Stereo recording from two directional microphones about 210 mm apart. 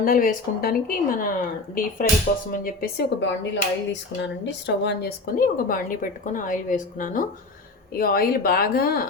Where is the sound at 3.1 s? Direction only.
60° left (ahead or behind).